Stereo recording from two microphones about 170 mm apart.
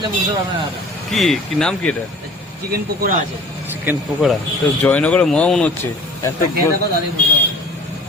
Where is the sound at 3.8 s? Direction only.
5° right (ahead or behind).